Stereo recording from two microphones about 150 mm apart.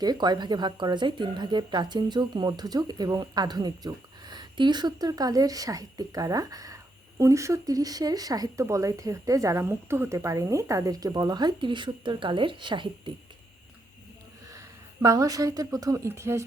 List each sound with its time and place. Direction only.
0.0 s speech: 30° right (ahead or behind)
15.0 s speech: 25° right (ahead or behind)